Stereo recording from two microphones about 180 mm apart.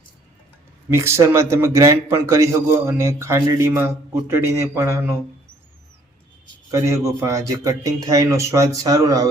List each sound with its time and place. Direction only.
0.9 s a man's voice: 15° right (ahead or behind)
6.7 s a man's voice: 15° right (ahead or behind)